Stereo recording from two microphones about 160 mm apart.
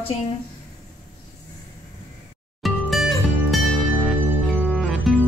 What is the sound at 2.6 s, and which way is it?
Music, centre (ahead or behind).